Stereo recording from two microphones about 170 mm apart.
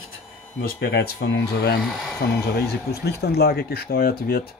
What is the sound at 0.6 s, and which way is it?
Speech, 70° left (ahead or behind).